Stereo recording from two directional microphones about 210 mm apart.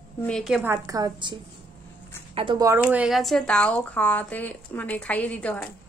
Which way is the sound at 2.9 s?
5° right (ahead or behind).